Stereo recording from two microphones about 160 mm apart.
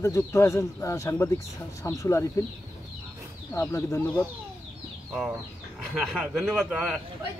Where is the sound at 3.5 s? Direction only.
15° left (ahead or behind).